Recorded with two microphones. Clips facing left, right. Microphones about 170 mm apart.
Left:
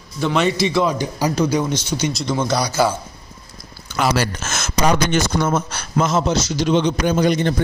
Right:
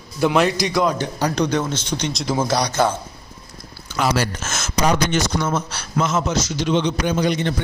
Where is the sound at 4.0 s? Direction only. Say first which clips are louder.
Left 1 dB; 70° left (ahead or behind).